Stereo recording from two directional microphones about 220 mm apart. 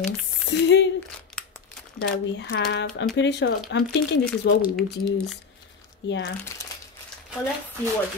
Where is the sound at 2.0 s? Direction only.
50° left (ahead or behind).